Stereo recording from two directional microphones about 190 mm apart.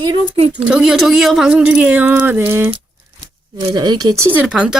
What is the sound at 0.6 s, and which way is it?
Speech, 5° right (ahead or behind).